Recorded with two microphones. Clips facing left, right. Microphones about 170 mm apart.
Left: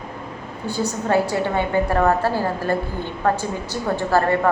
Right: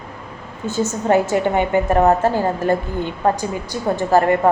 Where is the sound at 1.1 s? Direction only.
20° right (ahead or behind).